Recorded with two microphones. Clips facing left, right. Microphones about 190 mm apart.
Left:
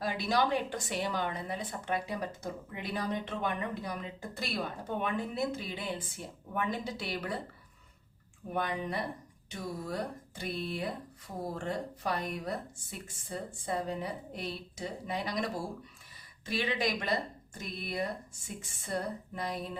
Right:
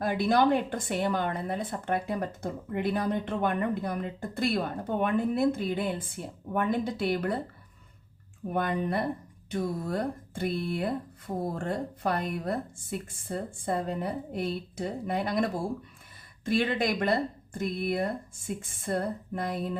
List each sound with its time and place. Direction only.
0.0 s a woman's voice: 55° right (ahead or behind)
8.5 s a woman's voice: 55° right (ahead or behind)
16.5 s a woman's voice: 55° right (ahead or behind)